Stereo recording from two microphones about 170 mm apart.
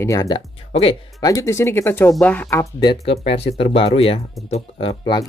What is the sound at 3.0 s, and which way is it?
Speech, 35° left (ahead or behind).